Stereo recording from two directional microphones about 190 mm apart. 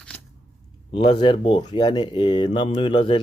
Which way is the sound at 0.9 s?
25° left (ahead or behind).